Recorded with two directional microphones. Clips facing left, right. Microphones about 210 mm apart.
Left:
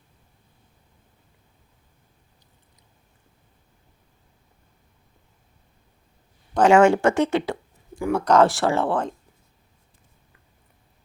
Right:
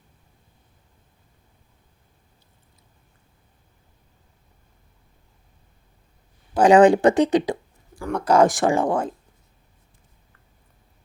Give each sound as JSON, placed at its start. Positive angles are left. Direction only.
{"t": 6.5, "sound": "speech", "side_deg": -15}